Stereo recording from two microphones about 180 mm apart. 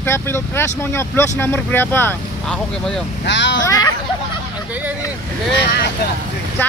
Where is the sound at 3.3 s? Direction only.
80° left.